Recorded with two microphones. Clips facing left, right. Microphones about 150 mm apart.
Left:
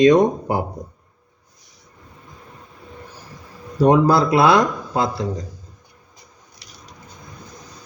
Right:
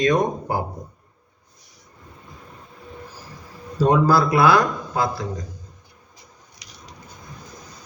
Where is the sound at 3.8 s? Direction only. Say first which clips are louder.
Left 3 dB; 20° left (ahead or behind).